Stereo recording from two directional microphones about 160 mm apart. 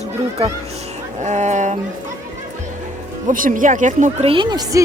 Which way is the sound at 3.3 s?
55° right (ahead or behind).